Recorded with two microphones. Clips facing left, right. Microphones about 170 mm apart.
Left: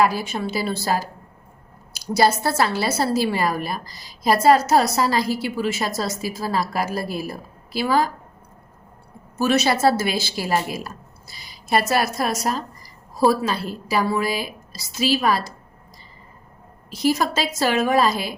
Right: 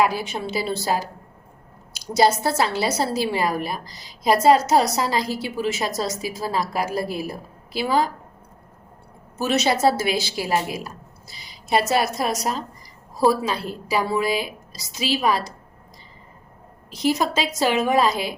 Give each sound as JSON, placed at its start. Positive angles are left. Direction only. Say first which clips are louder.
{"t": 0.0, "sound": "a woman's voice", "louder": "left 1 dB", "side_deg": -15}
{"t": 9.4, "sound": "a woman's voice", "louder": "left 1 dB", "side_deg": -20}
{"t": 16.9, "sound": "a woman's voice", "louder": "left 1 dB", "side_deg": -20}